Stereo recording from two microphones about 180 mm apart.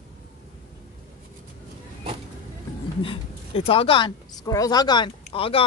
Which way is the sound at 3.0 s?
30° left (ahead or behind).